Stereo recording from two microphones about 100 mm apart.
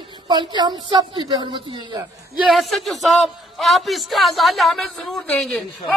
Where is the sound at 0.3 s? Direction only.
50° right (ahead or behind).